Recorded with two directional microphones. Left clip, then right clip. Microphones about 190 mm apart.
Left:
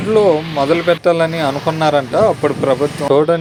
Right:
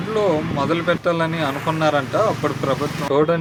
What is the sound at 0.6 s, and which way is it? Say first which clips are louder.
Speech: left 8 dB; 30° left (ahead or behind).